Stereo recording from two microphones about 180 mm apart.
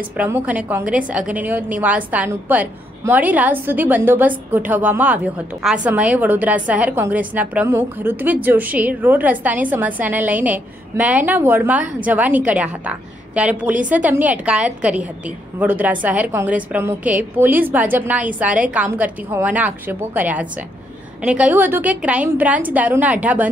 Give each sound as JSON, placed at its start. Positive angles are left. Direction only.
{"t": 0.2, "sound": "a woman's voice", "side_deg": -10}
{"t": 13.7, "sound": "a woman's voice", "side_deg": -45}
{"t": 14.0, "sound": "a woman's voice", "side_deg": -10}